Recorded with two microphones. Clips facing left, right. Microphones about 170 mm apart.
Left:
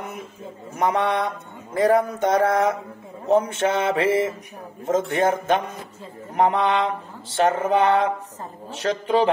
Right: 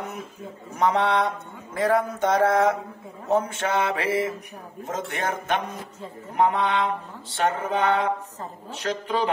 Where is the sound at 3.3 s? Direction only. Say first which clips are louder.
Left 4 dB; 25° left (ahead or behind).